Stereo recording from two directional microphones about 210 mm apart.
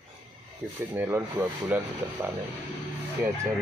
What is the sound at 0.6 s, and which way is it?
Speech, 5° right (ahead or behind).